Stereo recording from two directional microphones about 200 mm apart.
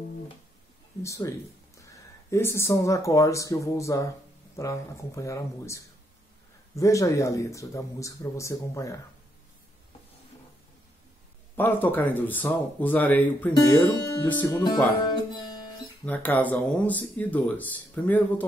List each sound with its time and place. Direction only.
1.0 s speech: 15° left (ahead or behind)
11.5 s speech: 10° left (ahead or behind)
13.5 s speech: 20° left (ahead or behind)
14.2 s speech: 10° left (ahead or behind)
15.0 s music: 20° left (ahead or behind)
16.1 s speech: 10° left (ahead or behind)